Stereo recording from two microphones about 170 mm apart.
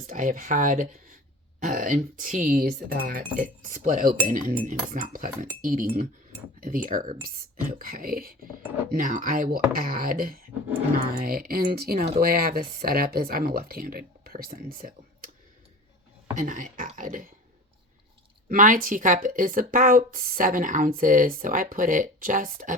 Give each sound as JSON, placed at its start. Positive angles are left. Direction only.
{"t": 0.1, "sound": "speech", "side_deg": -50}
{"t": 16.4, "sound": "speech", "side_deg": -50}
{"t": 18.4, "sound": "speech", "side_deg": -55}